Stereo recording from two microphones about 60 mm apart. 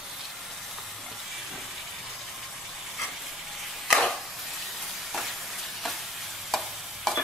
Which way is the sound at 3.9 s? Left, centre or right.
Centre.